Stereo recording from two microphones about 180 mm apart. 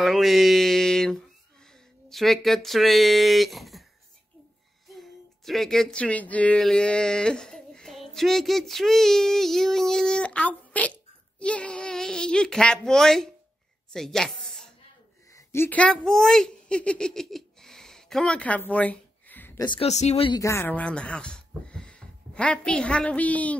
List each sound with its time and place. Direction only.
0.0 s speech: centre (ahead or behind)
4.8 s a woman's voice: centre (ahead or behind)
15.3 s speech: 15° left (ahead or behind)
19.6 s speech: 25° left (ahead or behind)
19.9 s speech: 40° left (ahead or behind)
20.3 s speech: 15° left (ahead or behind)